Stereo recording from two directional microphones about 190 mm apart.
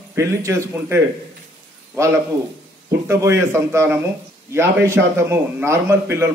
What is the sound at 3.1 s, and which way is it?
A man's voice, 15° right (ahead or behind).